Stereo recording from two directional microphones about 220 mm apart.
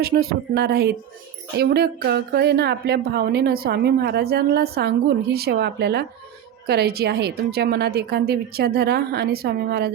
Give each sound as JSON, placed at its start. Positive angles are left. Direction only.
{"t": 0.0, "sound": "speech", "side_deg": -45}